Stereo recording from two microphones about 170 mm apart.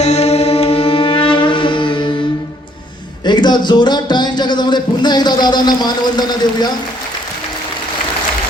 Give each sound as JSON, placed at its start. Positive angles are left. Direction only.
{"t": 0.0, "sound": "music", "side_deg": 40}
{"t": 3.2, "sound": "a man's voice", "side_deg": 25}